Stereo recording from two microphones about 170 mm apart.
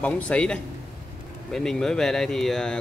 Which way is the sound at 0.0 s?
10° left (ahead or behind).